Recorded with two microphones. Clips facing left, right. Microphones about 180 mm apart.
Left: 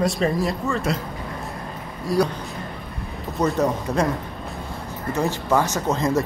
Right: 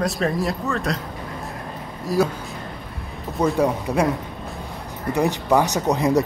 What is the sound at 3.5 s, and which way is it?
Speech, 10° right (ahead or behind).